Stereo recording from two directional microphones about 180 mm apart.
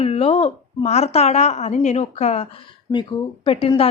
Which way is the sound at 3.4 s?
30° left (ahead or behind).